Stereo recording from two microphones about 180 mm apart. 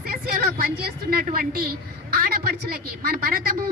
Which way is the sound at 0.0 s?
55° right (ahead or behind).